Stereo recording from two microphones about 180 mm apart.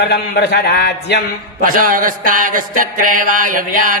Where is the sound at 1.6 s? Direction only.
50° right (ahead or behind).